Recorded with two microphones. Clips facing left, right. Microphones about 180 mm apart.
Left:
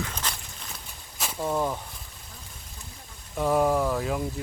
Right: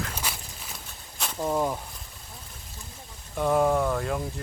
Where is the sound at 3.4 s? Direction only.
Centre (ahead or behind).